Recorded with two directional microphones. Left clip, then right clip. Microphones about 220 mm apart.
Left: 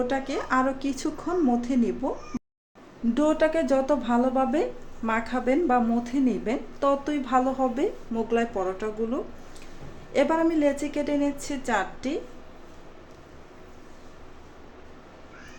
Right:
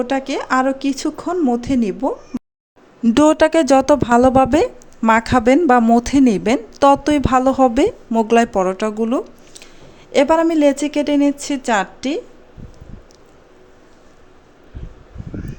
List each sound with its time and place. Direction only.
0.0 s speech: 40° right (ahead or behind)
3.2 s speech: 50° right (ahead or behind)